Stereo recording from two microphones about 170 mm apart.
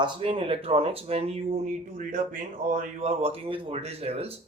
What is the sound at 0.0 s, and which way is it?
Speech, 30° right (ahead or behind).